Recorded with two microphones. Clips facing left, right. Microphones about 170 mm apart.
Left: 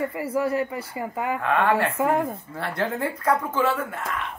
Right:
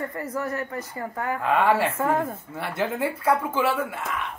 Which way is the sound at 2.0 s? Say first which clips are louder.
Left 2 dB; 10° left (ahead or behind).